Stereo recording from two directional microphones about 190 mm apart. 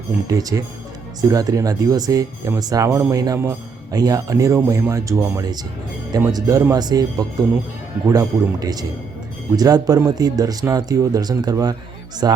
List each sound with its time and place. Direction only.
0.3 s speech: 20° right (ahead or behind)